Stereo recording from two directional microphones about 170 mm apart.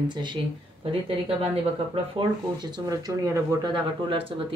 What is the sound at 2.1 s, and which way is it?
Speech, 25° right (ahead or behind).